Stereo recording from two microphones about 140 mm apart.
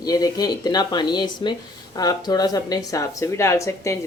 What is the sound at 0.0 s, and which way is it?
Speech, 25° left (ahead or behind).